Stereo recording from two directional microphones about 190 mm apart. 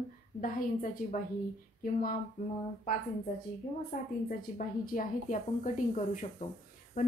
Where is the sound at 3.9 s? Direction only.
50° left (ahead or behind).